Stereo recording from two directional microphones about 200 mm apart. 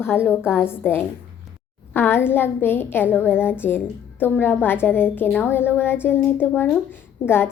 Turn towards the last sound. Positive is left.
turn(degrees=10)  # may be behind; listen again after turning